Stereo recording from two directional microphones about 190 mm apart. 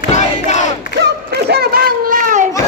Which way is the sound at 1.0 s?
55° right (ahead or behind).